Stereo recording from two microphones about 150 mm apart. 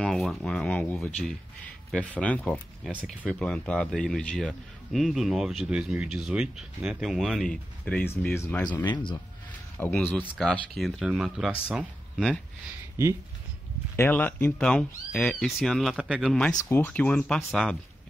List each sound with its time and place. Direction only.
0.0 s a man's voice: centre (ahead or behind)
8.8 s speech: 30° left (ahead or behind)
9.8 s speech: 10° left (ahead or behind)
10.2 s a man's voice: centre (ahead or behind)
13.9 s a man's voice: 15° left (ahead or behind)